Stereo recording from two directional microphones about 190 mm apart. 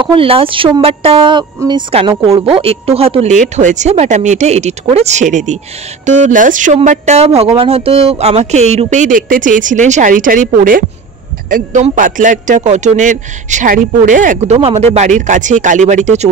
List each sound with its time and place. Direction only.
0.0 s speech: 30° right (ahead or behind)